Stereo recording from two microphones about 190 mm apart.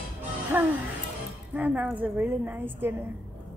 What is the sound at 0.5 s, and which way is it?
A woman's voice, 10° right (ahead or behind).